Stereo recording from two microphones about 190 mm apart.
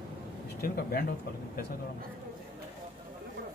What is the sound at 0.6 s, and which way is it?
Speech, 55° left (ahead or behind).